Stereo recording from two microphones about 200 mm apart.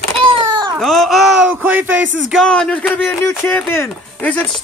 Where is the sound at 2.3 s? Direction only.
5° left (ahead or behind).